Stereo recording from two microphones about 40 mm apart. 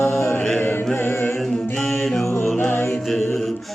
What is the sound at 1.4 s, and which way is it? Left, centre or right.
Music, centre.